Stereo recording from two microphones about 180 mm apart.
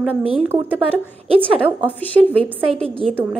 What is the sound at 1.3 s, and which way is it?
Speech, 30° right (ahead or behind).